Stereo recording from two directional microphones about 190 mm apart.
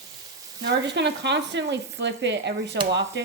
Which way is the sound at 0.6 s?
65° right (ahead or behind).